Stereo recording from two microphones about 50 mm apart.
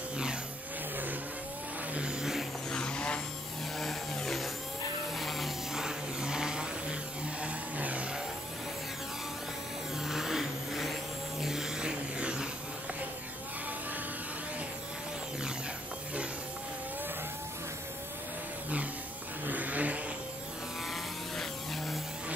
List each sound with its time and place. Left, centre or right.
2.0 s vehicle: centre
2.7 s a sound: centre
5.1 s a sound: centre
5.8 s vehicle: centre
7.4 s vehicle: right
9.9 s vehicle: centre
19.4 s vehicle: right
21.4 s vehicle: centre